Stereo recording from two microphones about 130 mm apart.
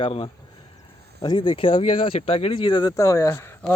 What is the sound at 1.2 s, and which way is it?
Speech, 35° left (ahead or behind).